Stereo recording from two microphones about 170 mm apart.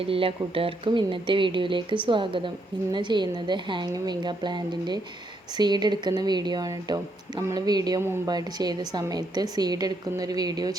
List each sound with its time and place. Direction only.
0.0 s speech: 35° right (ahead or behind)